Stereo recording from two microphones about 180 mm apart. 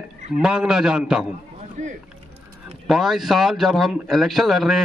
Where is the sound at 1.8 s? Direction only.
40° right (ahead or behind).